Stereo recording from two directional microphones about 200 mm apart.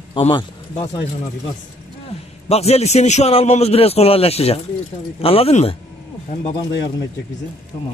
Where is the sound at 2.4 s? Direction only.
30° left (ahead or behind).